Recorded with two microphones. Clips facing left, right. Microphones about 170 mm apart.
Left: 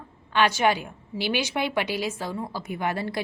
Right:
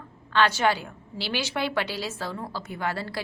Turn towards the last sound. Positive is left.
turn(degrees=20)  # may be behind; listen again after turning